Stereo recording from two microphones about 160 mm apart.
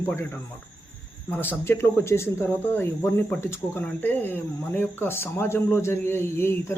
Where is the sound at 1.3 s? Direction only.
10° left (ahead or behind).